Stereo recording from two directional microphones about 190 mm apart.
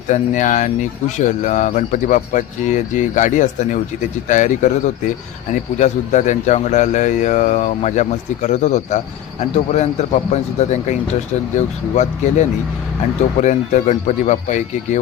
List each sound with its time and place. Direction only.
0.1 s speech: 40° left (ahead or behind)